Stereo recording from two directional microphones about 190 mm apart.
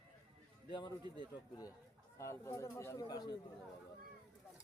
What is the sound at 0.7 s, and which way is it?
Speech, 20° left (ahead or behind).